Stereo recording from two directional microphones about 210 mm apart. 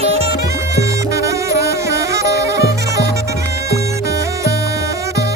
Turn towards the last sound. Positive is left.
turn(degrees=-15)  # may be behind; listen again after turning